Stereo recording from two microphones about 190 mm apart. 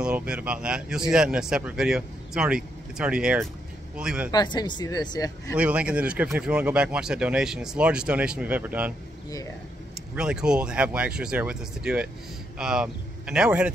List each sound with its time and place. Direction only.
0.0 s speech: 5° right (ahead or behind)
4.3 s speech: 20° left (ahead or behind)
5.6 s speech: 5° right (ahead or behind)
10.1 s speech: 5° right (ahead or behind)